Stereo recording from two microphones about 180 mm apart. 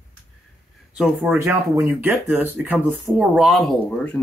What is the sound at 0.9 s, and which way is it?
Speech, 5° right (ahead or behind).